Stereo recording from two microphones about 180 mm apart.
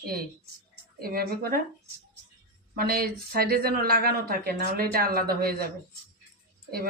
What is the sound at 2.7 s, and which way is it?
Speech, 55° right (ahead or behind).